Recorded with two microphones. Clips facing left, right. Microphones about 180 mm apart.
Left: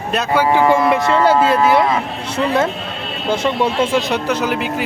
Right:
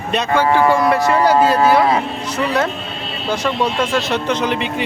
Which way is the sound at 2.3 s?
25° left (ahead or behind).